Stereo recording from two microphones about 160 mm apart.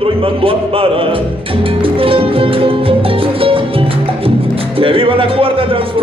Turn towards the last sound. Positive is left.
turn(degrees=-35)  # may be behind; listen again after turning